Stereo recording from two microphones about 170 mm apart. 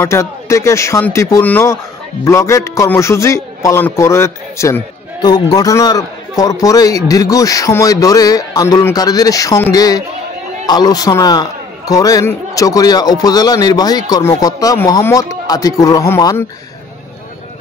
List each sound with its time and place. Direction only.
0.0 s a man's voice: 15° left (ahead or behind)